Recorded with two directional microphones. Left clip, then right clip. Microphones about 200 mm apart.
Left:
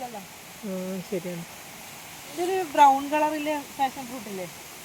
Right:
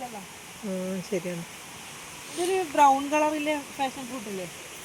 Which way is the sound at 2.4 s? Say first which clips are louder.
Even; 10° left (ahead or behind).